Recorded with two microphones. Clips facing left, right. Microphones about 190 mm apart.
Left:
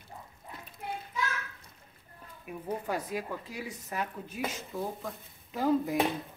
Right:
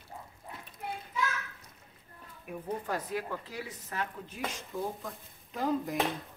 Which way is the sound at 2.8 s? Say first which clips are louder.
Left 1 dB; 15° left (ahead or behind).